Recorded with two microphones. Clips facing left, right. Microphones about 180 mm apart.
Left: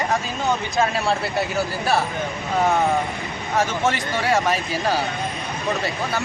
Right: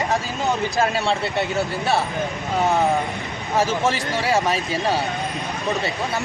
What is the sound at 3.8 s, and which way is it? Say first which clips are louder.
Speech: even; centre (ahead or behind).